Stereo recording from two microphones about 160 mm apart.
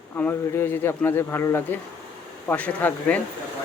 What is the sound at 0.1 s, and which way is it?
Speech, 15° left (ahead or behind).